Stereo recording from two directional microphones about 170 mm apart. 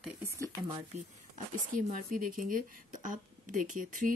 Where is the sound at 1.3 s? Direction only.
55° right (ahead or behind).